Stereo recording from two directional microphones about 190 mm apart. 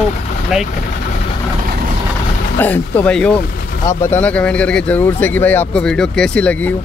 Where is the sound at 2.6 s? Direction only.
10° left (ahead or behind).